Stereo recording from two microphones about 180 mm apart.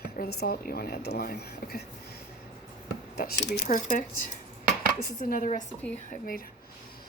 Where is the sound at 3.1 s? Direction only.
55° left (ahead or behind).